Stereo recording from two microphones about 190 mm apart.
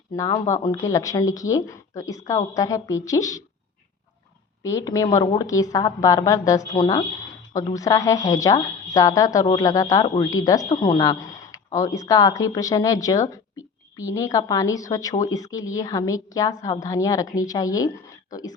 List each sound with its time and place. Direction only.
0.1 s a woman's voice: 20° left (ahead or behind)
4.6 s a woman's voice: 20° left (ahead or behind)